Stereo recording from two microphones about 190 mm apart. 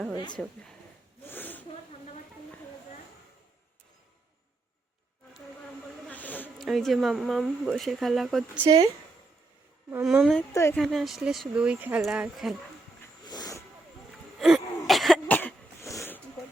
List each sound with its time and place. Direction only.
0.4 s speech: centre (ahead or behind)
1.2 s snake: 10° left (ahead or behind)
6.1 s insect: 10° left (ahead or behind)
6.7 s speech: centre (ahead or behind)
8.6 s speech: 25° right (ahead or behind)
9.9 s speech: 5° right (ahead or behind)
10.5 s a woman's voice: 15° left (ahead or behind)
10.8 s speech: centre (ahead or behind)
13.2 s a sound: 20° left (ahead or behind)
14.3 s throat clearing: centre (ahead or behind)
14.8 s cough: centre (ahead or behind)